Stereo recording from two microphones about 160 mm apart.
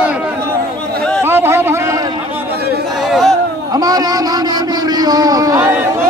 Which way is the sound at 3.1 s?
Centre (ahead or behind).